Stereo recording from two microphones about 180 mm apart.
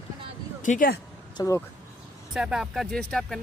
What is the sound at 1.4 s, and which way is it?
Speech, 20° left (ahead or behind).